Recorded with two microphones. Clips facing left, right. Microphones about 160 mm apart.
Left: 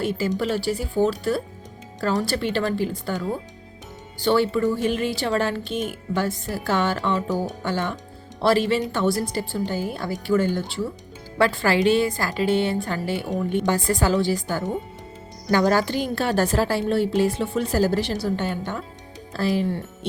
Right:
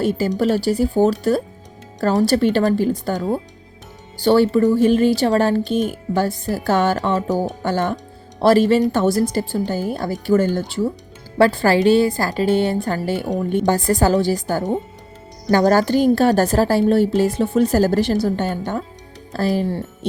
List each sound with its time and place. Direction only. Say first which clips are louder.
0.0 s a woman's voice: right 5 dB; 40° right (ahead or behind)